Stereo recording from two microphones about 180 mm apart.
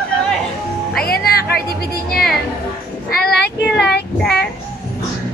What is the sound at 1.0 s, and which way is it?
Speech, 60° left (ahead or behind).